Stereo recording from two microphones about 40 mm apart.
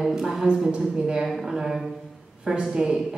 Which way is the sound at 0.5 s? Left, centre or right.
Centre.